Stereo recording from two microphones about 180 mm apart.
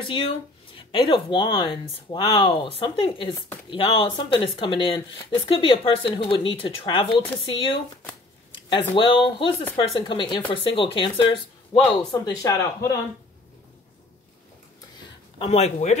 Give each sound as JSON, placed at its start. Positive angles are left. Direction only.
{"t": 0.0, "sound": "speech", "side_deg": 30}
{"t": 15.3, "sound": "speech", "side_deg": 35}